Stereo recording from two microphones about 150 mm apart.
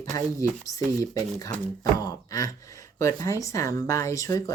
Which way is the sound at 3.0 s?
20° left (ahead or behind).